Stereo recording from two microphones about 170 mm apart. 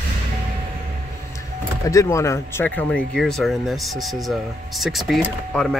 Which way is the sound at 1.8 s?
20° left (ahead or behind).